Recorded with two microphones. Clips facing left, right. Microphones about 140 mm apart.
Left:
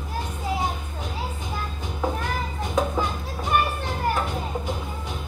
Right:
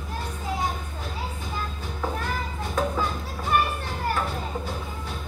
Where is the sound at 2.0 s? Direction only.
15° left (ahead or behind).